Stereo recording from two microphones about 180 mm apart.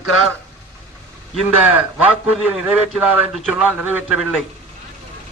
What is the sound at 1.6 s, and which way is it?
A man's voice, 5° right (ahead or behind).